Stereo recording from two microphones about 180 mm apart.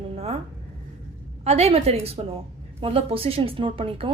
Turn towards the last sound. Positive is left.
turn(degrees=-30)  # may be behind; listen again after turning